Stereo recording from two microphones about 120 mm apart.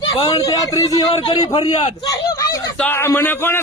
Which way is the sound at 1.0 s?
50° left (ahead or behind).